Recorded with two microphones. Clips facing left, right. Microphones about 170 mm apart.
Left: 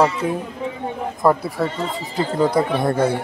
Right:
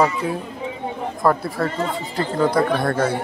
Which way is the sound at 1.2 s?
15° left (ahead or behind).